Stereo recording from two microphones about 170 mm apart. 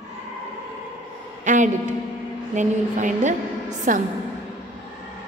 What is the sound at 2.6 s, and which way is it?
A woman's voice, 45° right (ahead or behind).